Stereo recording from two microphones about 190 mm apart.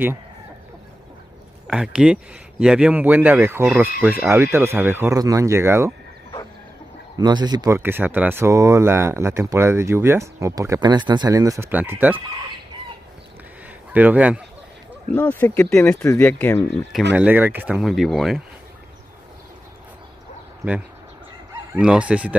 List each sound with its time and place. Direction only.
1.7 s speech: 5° right (ahead or behind)
3.6 s speech: centre (ahead or behind)
7.2 s speech: 20° right (ahead or behind)
13.9 s speech: 10° right (ahead or behind)
15.1 s speech: 10° left (ahead or behind)
17.1 s speech: 10° right (ahead or behind)
21.7 s speech: 5° right (ahead or behind)